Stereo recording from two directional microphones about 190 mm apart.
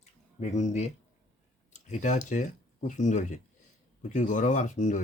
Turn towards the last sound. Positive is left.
turn(degrees=40)  # may be behind; listen again after turning